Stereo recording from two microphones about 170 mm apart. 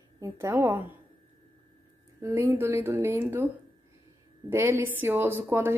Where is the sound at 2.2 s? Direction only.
15° right (ahead or behind).